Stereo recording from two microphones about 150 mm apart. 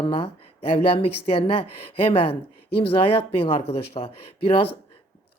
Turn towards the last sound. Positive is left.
turn(degrees=40)  # may be behind; listen again after turning